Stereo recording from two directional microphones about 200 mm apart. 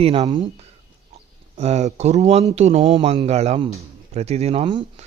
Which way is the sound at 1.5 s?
35° right (ahead or behind).